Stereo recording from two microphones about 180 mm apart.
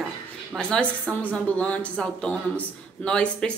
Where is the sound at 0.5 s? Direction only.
5° left (ahead or behind).